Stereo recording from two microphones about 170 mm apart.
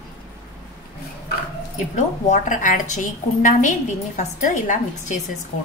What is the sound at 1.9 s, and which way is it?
Speech, 45° left (ahead or behind).